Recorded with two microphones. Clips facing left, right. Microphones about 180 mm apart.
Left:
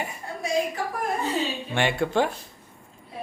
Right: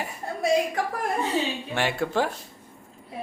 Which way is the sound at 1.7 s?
Centre (ahead or behind).